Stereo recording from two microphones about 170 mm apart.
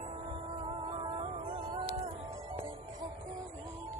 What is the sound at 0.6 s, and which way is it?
Music, 30° right (ahead or behind).